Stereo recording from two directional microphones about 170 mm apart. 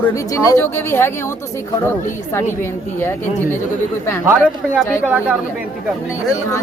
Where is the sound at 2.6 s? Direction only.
15° left (ahead or behind).